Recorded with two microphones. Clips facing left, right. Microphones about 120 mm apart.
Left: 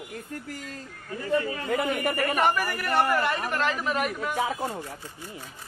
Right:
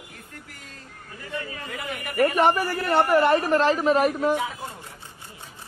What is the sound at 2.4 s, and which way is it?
A man's voice, 30° right (ahead or behind).